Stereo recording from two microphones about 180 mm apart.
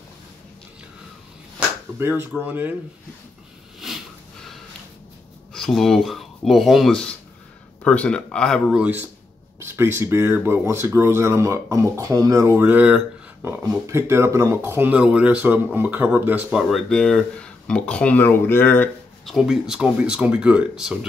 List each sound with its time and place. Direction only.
2.0 s speech: 10° right (ahead or behind)
5.5 s speech: centre (ahead or behind)
16.5 s speech: centre (ahead or behind)
19.2 s speech: centre (ahead or behind)